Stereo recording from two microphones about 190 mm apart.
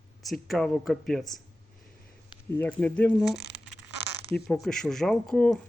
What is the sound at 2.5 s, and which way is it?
Speech, 10° left (ahead or behind).